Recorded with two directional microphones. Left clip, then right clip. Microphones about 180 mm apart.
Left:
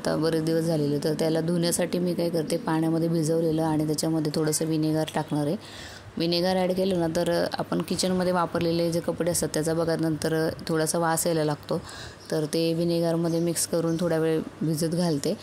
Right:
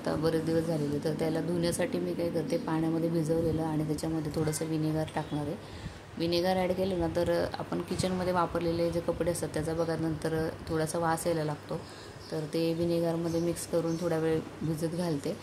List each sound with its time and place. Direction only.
0.0 s speech: 40° left (ahead or behind)